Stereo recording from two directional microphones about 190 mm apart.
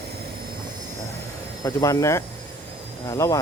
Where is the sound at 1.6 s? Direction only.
15° left (ahead or behind).